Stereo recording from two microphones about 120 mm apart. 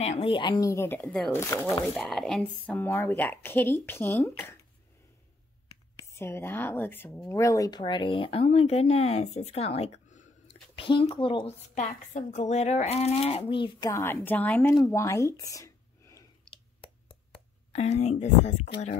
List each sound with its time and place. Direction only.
0.0 s speech: 65° left (ahead or behind)
0.3 s speech: 40° left (ahead or behind)
0.7 s a woman's voice: 15° left (ahead or behind)
1.0 s speech: 5° left (ahead or behind)
1.5 s speech: 25° left (ahead or behind)
2.0 s a woman's voice: 5° left (ahead or behind); by 4.6 s 20° left (ahead or behind)
6.1 s a woman's voice: 20° left (ahead or behind); by 9.8 s 55° left (ahead or behind)
10.5 s speech: 45° left (ahead or behind)
11.4 s speech: 70° left (ahead or behind); by 13.4 s 55° left (ahead or behind)
13.4 s speech: 40° left (ahead or behind)
13.8 s a woman's voice: 20° left (ahead or behind)
14.9 s a sound: 25° left (ahead or behind)
17.7 s speech: 65° left (ahead or behind)